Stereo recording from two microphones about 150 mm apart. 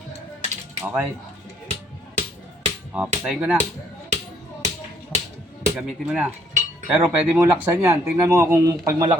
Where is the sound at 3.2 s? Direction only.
10° right (ahead or behind).